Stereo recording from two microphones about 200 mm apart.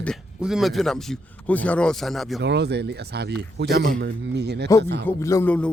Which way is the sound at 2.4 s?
55° right (ahead or behind).